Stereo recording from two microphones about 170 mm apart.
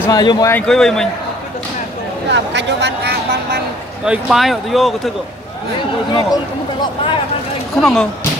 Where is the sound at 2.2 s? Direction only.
90° right.